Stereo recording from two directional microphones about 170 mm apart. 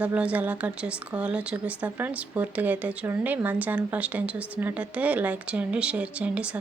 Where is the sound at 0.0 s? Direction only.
10° right (ahead or behind).